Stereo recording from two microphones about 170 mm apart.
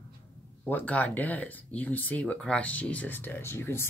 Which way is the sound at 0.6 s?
10° left (ahead or behind).